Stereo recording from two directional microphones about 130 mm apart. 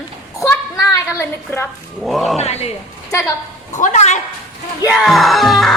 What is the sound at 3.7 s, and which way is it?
Speech, 65° left (ahead or behind).